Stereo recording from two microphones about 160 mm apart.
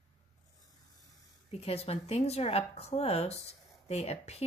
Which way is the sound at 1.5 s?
40° left (ahead or behind).